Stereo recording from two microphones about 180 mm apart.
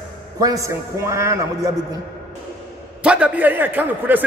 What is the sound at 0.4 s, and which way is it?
A man's voice, 20° right (ahead or behind).